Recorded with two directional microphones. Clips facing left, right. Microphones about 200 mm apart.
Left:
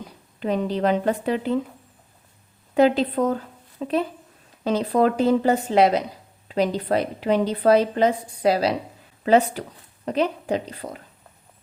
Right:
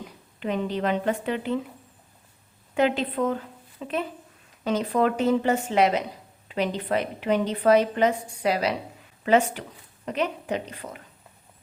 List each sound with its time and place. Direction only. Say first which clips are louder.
0.3 s speech: left 3 dB; 35° left (ahead or behind)
2.7 s a woman's voice: left 5 dB; 35° left (ahead or behind)